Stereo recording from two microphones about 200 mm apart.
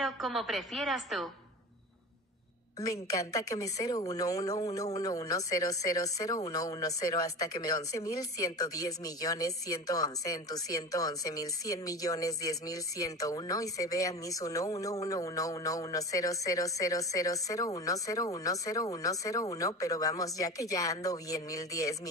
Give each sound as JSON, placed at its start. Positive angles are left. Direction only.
{"t": 0.0, "sound": "a woman's voice", "side_deg": 0}
{"t": 2.8, "sound": "speech", "side_deg": 15}